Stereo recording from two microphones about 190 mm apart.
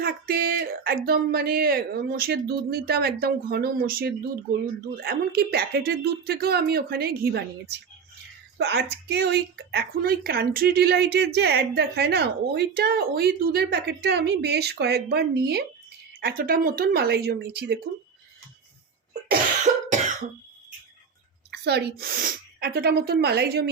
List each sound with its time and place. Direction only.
0.0 s speech: 50° right (ahead or behind)
19.3 s cough: 40° right (ahead or behind)
21.5 s speech: 60° right (ahead or behind)